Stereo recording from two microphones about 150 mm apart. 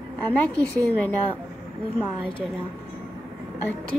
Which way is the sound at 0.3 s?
10° left (ahead or behind).